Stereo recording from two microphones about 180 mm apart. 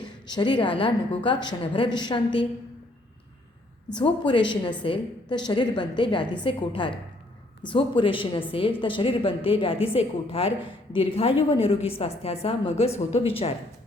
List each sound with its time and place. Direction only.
0.0 s a woman's voice: 25° left (ahead or behind)
3.9 s a woman's voice: 25° left (ahead or behind)